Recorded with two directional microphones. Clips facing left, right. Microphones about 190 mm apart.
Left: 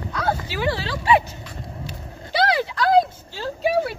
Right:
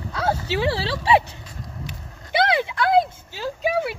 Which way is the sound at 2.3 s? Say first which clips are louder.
Even; 20° right (ahead or behind).